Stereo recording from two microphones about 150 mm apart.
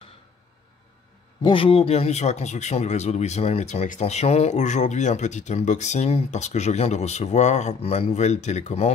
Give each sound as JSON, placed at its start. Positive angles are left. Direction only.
{"t": 1.4, "sound": "speech", "side_deg": 35}